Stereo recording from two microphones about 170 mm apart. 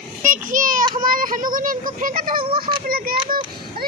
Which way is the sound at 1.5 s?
50° right (ahead or behind).